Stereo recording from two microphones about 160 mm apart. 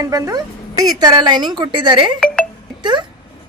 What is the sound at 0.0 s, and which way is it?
Speech, 20° right (ahead or behind).